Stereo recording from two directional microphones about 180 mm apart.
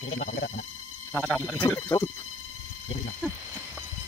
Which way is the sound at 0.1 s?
65° left (ahead or behind).